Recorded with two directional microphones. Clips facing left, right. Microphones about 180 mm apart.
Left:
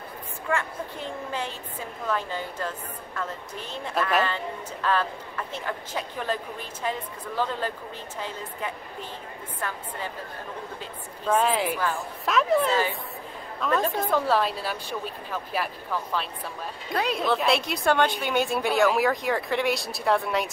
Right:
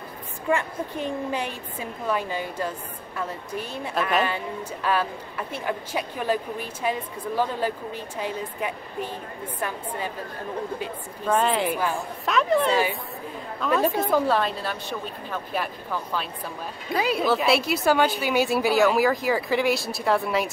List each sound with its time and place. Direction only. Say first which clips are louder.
0.5 s a woman's voice: right 4 dB; 15° right (ahead or behind)
11.2 s speech: right 1 dB; centre (ahead or behind)